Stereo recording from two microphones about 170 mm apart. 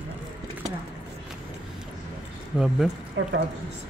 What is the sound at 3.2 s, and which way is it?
Speech, 90° right.